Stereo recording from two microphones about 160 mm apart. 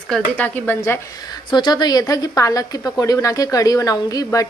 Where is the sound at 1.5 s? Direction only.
30° left (ahead or behind).